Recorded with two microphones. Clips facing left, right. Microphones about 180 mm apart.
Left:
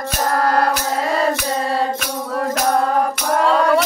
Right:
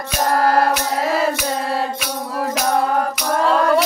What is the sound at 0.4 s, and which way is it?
Music, 30° right (ahead or behind).